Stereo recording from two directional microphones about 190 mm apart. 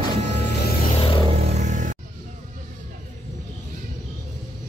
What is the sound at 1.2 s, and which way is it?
Vehicle, 35° right (ahead or behind).